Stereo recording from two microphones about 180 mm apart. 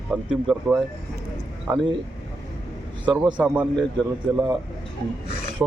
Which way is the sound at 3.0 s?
25° right (ahead or behind).